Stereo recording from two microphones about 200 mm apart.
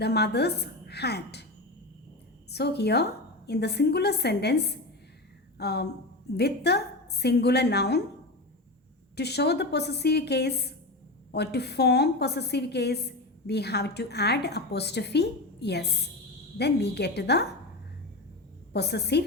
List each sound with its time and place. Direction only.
0.0 s a woman's voice: 55° left (ahead or behind)
2.5 s a woman's voice: 55° left (ahead or behind)
9.1 s a woman's voice: 55° left (ahead or behind)
18.7 s a woman's voice: 55° left (ahead or behind)